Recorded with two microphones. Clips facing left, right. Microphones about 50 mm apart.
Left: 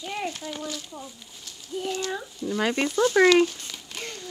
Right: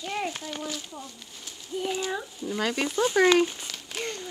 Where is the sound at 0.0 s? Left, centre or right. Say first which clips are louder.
Even; centre.